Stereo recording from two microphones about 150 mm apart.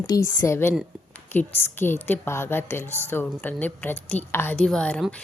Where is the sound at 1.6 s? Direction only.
15° left (ahead or behind).